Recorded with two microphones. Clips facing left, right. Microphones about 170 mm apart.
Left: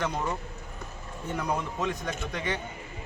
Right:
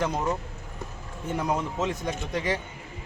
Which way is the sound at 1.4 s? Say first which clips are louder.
Right 3 dB; 20° right (ahead or behind).